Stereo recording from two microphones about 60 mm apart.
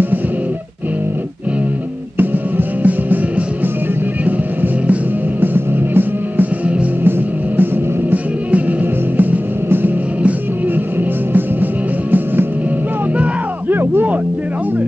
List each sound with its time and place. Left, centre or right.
2.1 s music: right
5.4 s music: right
11.3 s music: right
13.2 s a sound: right